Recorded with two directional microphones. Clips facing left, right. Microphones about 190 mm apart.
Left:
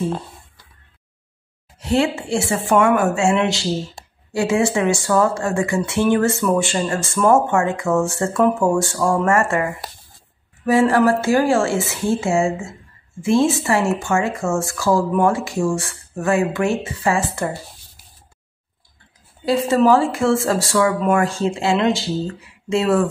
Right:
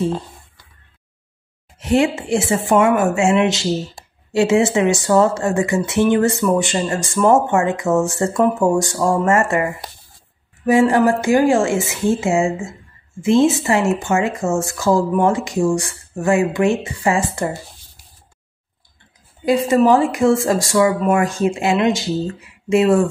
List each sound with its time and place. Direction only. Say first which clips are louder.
1.8 s a woman's voice: right 2 dB; 20° right (ahead or behind)
19.4 s speech: right 2 dB; 15° right (ahead or behind)